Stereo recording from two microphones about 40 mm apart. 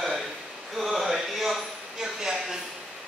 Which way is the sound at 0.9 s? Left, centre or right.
Centre.